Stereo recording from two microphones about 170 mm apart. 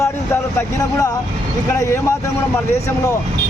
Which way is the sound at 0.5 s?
20° left (ahead or behind).